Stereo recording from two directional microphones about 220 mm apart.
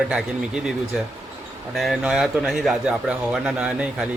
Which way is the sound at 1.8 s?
Centre (ahead or behind).